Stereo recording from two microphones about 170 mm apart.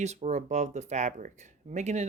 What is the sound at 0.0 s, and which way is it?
Speech, 40° right (ahead or behind).